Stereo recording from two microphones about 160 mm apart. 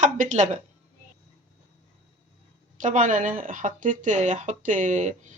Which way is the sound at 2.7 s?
50° right (ahead or behind).